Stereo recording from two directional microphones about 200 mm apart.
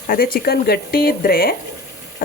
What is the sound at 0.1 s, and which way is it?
Speech, 50° left (ahead or behind).